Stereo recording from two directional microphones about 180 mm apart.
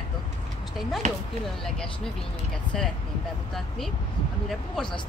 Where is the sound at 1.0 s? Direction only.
40° right (ahead or behind).